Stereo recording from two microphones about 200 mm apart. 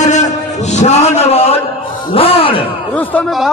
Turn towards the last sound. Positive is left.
turn(degrees=5)  # may be behind; listen again after turning